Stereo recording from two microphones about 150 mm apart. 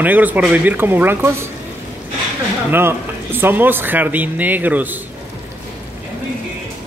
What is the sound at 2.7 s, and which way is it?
Speech, 15° right (ahead or behind).